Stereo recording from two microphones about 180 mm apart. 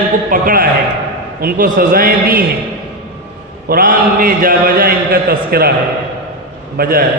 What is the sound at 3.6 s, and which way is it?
A man's voice, 55° right (ahead or behind).